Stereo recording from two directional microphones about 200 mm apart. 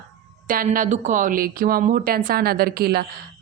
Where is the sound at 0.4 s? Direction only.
45° right (ahead or behind).